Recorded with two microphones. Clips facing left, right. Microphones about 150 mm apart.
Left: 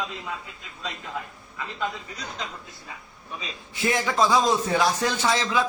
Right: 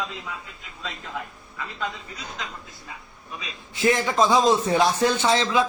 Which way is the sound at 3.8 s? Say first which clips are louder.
Right 3 dB; 20° right (ahead or behind).